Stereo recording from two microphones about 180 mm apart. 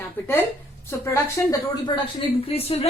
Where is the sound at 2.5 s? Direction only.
35° left (ahead or behind).